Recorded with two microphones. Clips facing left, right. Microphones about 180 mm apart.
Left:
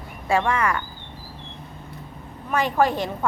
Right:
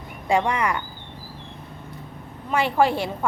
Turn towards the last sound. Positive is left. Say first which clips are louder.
# right 1 dB
turn(degrees=-10)  # may be behind; listen again after turning